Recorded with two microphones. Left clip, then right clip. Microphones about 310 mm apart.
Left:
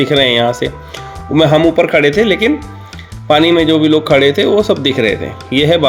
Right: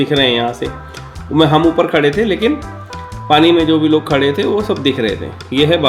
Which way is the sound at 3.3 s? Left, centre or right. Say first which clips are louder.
Left 1 dB; left.